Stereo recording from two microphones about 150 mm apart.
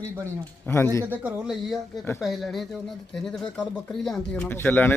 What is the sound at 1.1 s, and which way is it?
Speech, 10° right (ahead or behind).